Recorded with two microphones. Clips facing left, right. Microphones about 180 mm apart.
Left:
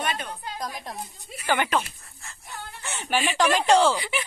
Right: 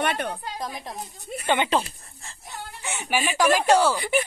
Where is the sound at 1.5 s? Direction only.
25° right (ahead or behind).